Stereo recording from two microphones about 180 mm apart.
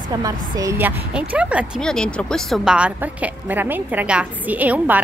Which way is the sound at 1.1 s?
5° right (ahead or behind).